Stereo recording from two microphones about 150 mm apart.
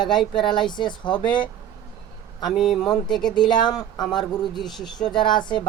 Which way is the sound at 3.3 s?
30° left (ahead or behind).